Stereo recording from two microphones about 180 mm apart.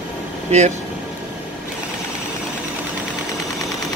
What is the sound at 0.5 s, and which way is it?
Speech, 40° right (ahead or behind).